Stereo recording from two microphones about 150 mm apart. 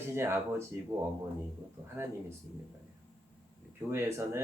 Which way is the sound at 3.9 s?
20° right (ahead or behind).